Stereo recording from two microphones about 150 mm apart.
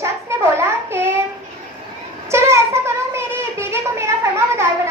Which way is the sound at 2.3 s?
20° right (ahead or behind).